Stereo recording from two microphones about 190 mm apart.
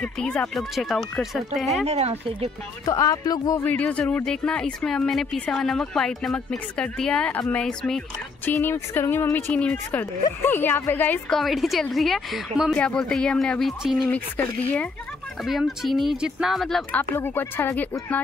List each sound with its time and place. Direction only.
0.0 s speech: 5° left (ahead or behind)
1.9 s speech: 35° right (ahead or behind)
2.8 s speech: 20° left (ahead or behind)